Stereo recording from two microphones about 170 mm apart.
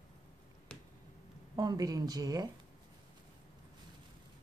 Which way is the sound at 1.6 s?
25° right (ahead or behind).